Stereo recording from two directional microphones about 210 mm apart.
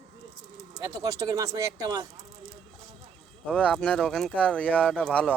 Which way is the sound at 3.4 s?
5° left (ahead or behind).